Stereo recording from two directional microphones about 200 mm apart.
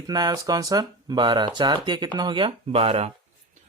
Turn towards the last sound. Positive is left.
turn(degrees=-30)  # may be behind; listen again after turning